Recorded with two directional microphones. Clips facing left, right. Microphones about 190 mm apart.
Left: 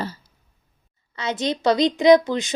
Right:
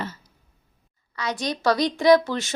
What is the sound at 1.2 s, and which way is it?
A woman's voice, 25° left (ahead or behind).